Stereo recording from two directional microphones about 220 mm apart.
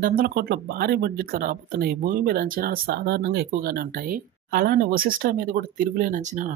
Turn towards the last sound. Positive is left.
turn(degrees=-35)  # may be behind; listen again after turning